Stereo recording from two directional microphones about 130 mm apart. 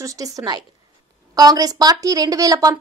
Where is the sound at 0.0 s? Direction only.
25° right (ahead or behind).